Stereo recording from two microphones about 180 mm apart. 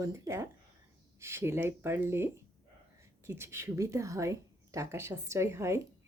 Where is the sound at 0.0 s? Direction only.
15° right (ahead or behind).